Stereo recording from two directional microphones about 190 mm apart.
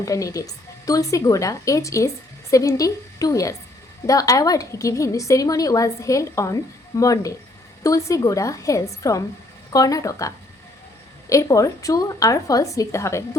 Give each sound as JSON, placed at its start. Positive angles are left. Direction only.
{"t": 0.0, "sound": "a woman's voice", "side_deg": 15}